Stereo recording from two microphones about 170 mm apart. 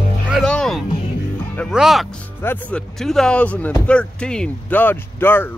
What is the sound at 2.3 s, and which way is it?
Speech, 15° left (ahead or behind).